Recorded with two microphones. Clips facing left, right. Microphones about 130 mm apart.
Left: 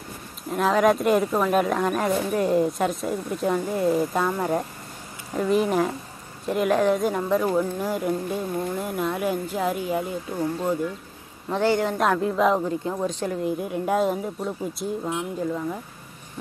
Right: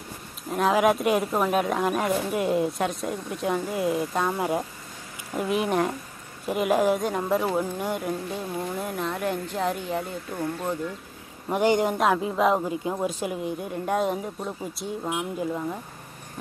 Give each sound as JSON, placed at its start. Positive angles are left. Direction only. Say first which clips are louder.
{"t": 0.5, "sound": "a woman's voice", "louder": "left 1 dB", "side_deg": 0}
{"t": 8.8, "sound": "speech", "louder": "left 3 dB", "side_deg": 5}
{"t": 10.3, "sound": "speech", "louder": "left 4 dB", "side_deg": 15}
{"t": 11.4, "sound": "a woman's voice", "louder": "even", "side_deg": -15}
{"t": 12.0, "sound": "a woman's voice", "louder": "left 1 dB", "side_deg": -5}
{"t": 13.5, "sound": "speech", "louder": "left 4 dB", "side_deg": 0}
{"t": 15.0, "sound": "a woman's voice", "louder": "right 2 dB", "side_deg": -15}